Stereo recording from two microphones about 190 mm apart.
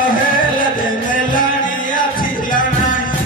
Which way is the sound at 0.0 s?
45° left (ahead or behind).